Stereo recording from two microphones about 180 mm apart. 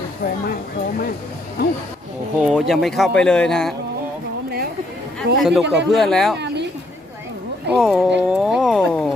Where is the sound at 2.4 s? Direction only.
5° right (ahead or behind).